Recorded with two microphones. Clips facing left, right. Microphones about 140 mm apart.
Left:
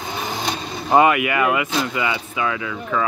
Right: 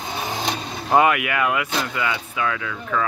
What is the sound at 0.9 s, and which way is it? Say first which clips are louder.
Speech: left 2 dB; centre (ahead or behind).